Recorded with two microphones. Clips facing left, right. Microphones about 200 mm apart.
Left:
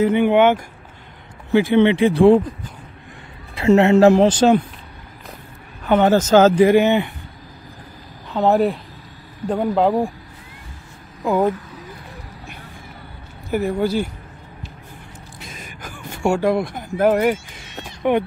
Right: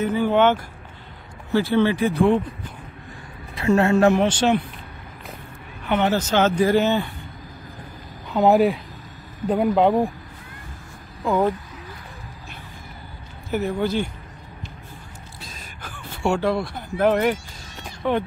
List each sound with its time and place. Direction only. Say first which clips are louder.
0.1 s speech: left 4 dB; 15° left (ahead or behind); by 2.4 s 30° left (ahead or behind)
3.5 s speech: left 5 dB; 25° left (ahead or behind)
5.9 s speech: left 6 dB; 45° left (ahead or behind)
6.6 s speech: left 5 dB; 15° left (ahead or behind)
8.3 s speech: even; 5° right (ahead or behind)
11.2 s speech: left 2 dB; 10° left (ahead or behind)
13.5 s speech: left 3 dB; 10° left (ahead or behind)
15.8 s a sound: left 3 dB; 15° left (ahead or behind)
16.9 s speech: left 3 dB; 10° left (ahead or behind)